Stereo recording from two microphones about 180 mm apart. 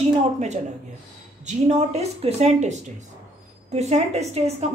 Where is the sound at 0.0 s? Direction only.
40° right (ahead or behind).